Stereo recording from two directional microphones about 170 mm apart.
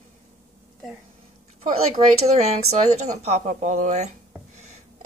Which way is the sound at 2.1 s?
40° right (ahead or behind).